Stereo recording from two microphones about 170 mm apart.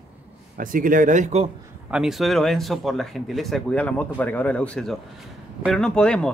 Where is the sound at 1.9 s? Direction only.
5° right (ahead or behind).